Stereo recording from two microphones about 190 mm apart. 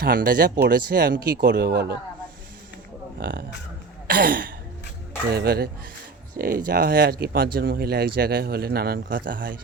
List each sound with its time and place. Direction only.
0.0 s speech: 50° right (ahead or behind)
3.2 s speech: 55° right (ahead or behind)
4.0 s throat clearing: 50° right (ahead or behind)
5.3 s speech: 55° right (ahead or behind)